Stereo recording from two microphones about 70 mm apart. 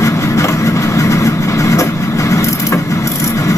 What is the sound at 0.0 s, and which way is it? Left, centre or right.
Vehicle, left.